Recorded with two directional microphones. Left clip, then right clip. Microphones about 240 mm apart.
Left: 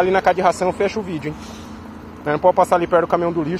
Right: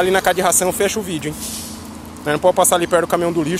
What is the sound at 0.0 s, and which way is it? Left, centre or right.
Speech, centre.